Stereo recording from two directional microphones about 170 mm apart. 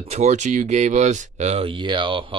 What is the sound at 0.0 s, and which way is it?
Speech, 40° right (ahead or behind).